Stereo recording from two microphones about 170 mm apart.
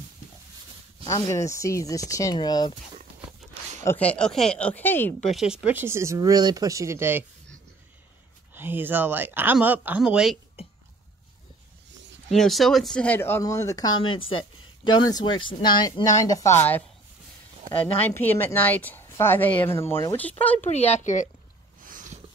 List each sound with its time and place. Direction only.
1.0 s speech: 20° left (ahead or behind)
3.8 s a woman's voice: 10° left (ahead or behind)
5.3 s speech: 5° right (ahead or behind)
8.5 s speech: 10° right (ahead or behind)
12.3 s a woman's voice: centre (ahead or behind)
17.9 s a woman's voice: 10° left (ahead or behind)
20.7 s speech: 40° left (ahead or behind)
21.8 s a sound: 50° right (ahead or behind)